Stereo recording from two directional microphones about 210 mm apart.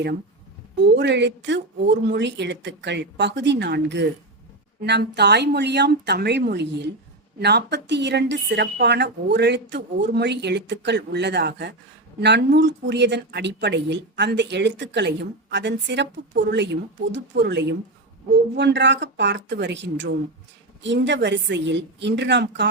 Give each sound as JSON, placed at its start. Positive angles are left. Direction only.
{"t": 0.9, "sound": "a woman's voice", "side_deg": -55}